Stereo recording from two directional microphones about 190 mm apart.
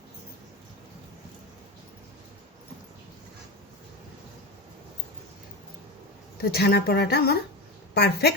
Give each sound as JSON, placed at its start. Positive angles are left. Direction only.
{"t": 6.5, "sound": "speech", "side_deg": 55}